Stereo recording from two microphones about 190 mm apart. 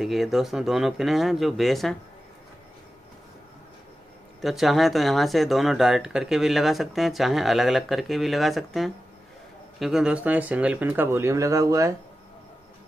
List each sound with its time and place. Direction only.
0.0 s speech: centre (ahead or behind)
4.4 s speech: centre (ahead or behind); by 11.9 s 15° right (ahead or behind)